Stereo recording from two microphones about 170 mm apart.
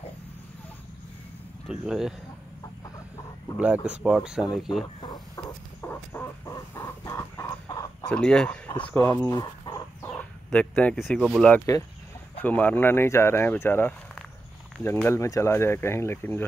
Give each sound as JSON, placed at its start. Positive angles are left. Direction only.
{"t": 1.7, "sound": "speech", "side_deg": -5}
{"t": 3.5, "sound": "speech", "side_deg": -10}
{"t": 5.0, "sound": "a sound", "side_deg": 25}
{"t": 8.1, "sound": "speech", "side_deg": 5}
{"t": 8.9, "sound": "bird", "side_deg": 15}
{"t": 10.1, "sound": "speech", "side_deg": 5}
{"t": 11.5, "sound": "speech", "side_deg": 20}